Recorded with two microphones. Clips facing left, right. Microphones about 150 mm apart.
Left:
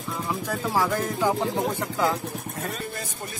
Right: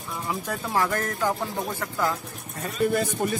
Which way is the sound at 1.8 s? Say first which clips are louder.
Left 2 dB; 15° left (ahead or behind).